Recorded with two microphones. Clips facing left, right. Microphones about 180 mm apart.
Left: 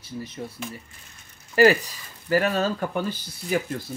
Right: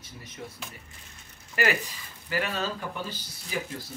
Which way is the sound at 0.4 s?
35° left (ahead or behind).